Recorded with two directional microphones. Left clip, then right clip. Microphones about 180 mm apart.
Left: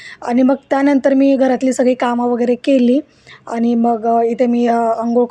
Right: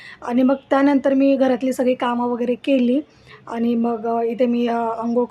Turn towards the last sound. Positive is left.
turn(degrees=25)  # may be behind; listen again after turning